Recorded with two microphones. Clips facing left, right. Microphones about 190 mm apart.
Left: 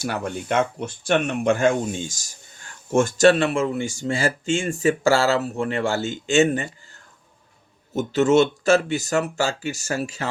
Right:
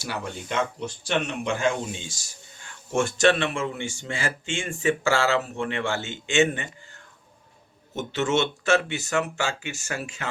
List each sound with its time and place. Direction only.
0.0 s speech: 50° left (ahead or behind)